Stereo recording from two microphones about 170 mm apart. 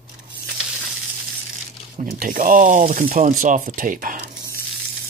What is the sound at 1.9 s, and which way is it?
Speech, 50° right (ahead or behind).